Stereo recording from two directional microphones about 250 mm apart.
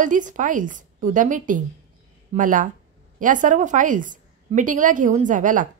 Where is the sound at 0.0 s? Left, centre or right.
Right.